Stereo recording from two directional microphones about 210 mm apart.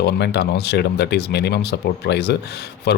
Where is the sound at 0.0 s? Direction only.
50° left (ahead or behind).